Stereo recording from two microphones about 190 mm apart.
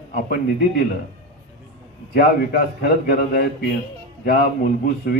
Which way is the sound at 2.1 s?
55° left (ahead or behind).